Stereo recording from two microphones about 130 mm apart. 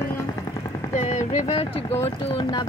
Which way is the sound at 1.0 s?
70° left (ahead or behind).